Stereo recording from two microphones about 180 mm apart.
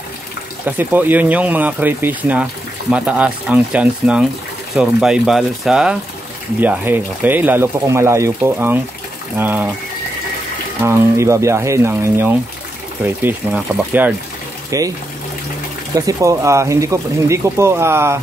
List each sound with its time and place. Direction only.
0.7 s speech: 10° right (ahead or behind)
10.8 s speech: 15° right (ahead or behind)
15.9 s speech: 20° right (ahead or behind)